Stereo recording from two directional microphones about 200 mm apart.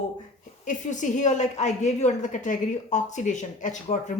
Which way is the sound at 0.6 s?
40° left (ahead or behind).